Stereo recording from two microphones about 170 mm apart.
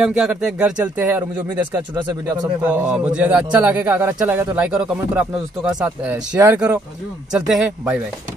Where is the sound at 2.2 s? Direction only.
25° right (ahead or behind).